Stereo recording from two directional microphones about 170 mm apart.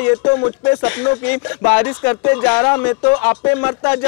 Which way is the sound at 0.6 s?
10° left (ahead or behind).